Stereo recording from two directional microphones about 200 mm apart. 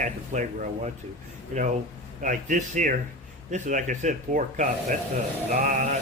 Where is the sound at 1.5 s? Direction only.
40° right (ahead or behind).